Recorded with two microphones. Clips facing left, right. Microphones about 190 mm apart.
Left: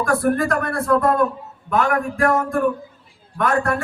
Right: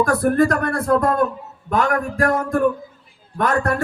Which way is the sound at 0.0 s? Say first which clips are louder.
Right 3 dB; 35° right (ahead or behind).